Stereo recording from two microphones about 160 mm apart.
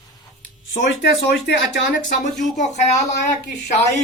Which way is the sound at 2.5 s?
50° left (ahead or behind).